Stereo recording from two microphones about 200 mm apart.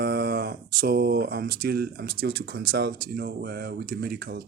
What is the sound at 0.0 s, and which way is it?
Speech, 50° right (ahead or behind).